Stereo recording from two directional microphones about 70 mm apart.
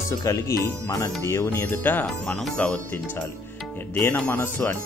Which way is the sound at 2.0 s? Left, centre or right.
Centre.